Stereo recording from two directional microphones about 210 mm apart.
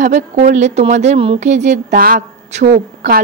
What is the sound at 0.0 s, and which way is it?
Speech, 35° right (ahead or behind).